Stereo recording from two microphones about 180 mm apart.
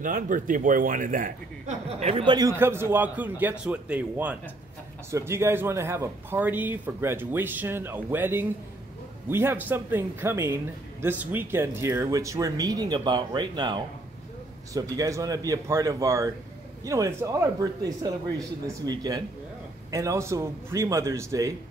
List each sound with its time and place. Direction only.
0.0 s a man's voice: 50° right (ahead or behind); by 2.5 s 25° right (ahead or behind)
2.5 s a man's voice: 15° right (ahead or behind)